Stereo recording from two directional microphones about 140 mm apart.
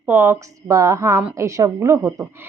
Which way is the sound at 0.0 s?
15° right (ahead or behind).